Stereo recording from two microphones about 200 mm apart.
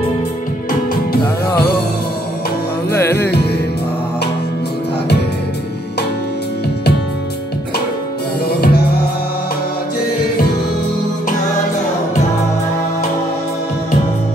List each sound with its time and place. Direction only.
2.9 s music: 10° left (ahead or behind)
8.5 s music: 50° left (ahead or behind)